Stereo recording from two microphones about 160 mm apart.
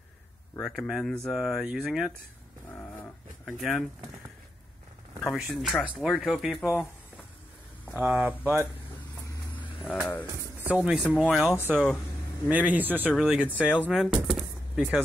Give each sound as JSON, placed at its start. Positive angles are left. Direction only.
{"t": 0.6, "sound": "speech", "side_deg": 0}
{"t": 2.7, "sound": "a sound", "side_deg": 10}
{"t": 3.5, "sound": "speech", "side_deg": 0}
{"t": 5.2, "sound": "speech", "side_deg": 0}
{"t": 6.6, "sound": "speech", "side_deg": 15}
{"t": 8.0, "sound": "speech", "side_deg": -10}
{"t": 9.9, "sound": "speech", "side_deg": -5}